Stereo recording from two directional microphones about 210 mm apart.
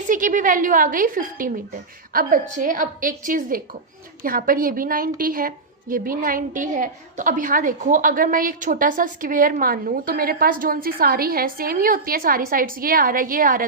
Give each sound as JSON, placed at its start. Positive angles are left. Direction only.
{"t": 0.1, "sound": "a woman's voice", "side_deg": -40}